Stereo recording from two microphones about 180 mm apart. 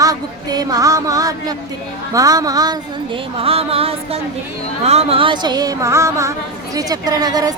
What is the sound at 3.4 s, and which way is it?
Music, 30° right (ahead or behind).